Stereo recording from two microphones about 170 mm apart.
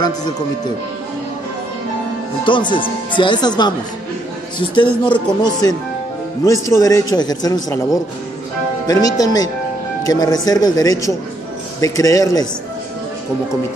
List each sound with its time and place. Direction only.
2.4 s a man's voice: 30° left (ahead or behind)
5.0 s a man's voice: 25° left (ahead or behind)
8.8 s a man's voice: 20° left (ahead or behind)